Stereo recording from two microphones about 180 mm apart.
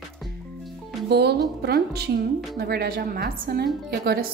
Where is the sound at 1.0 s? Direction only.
65° right (ahead or behind).